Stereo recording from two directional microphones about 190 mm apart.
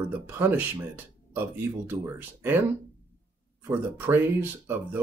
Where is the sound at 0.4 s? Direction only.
10° right (ahead or behind).